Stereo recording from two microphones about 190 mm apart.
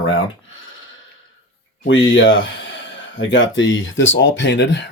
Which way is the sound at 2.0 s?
75° left (ahead or behind).